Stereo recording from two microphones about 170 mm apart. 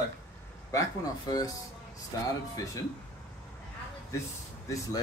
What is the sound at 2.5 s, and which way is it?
Speech, 20° left (ahead or behind).